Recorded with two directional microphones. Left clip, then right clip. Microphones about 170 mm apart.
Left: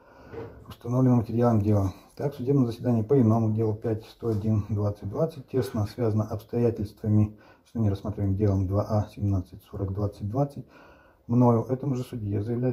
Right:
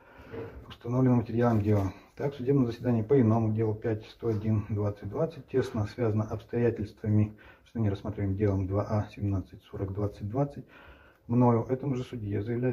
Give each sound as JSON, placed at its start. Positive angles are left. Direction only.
{"t": 0.7, "sound": "speech", "side_deg": 45}